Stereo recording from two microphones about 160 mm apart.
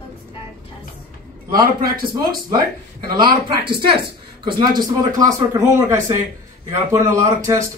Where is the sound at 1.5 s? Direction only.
65° right (ahead or behind).